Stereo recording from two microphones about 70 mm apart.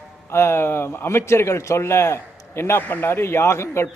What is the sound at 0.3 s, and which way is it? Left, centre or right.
A man's voice, left.